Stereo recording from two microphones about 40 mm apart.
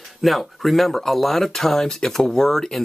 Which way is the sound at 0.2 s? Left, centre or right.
Centre.